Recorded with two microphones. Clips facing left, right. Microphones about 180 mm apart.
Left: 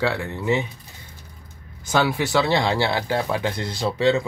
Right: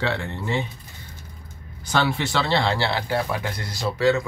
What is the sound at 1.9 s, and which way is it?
Speech, 10° left (ahead or behind).